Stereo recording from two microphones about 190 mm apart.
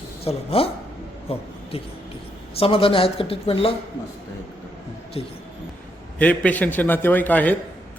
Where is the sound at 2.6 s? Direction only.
30° left (ahead or behind).